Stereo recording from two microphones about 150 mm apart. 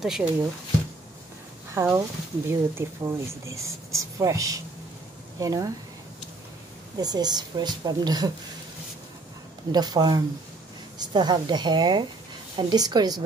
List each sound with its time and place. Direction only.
0.0 s speech: centre (ahead or behind)
1.8 s speech: 15° right (ahead or behind)
7.0 s speech: 25° right (ahead or behind)
9.7 s speech: 25° right (ahead or behind)